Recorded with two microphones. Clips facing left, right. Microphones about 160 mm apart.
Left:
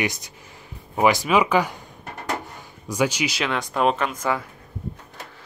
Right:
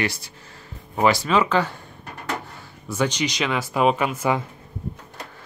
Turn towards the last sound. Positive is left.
turn(degrees=-10)  # may be behind; listen again after turning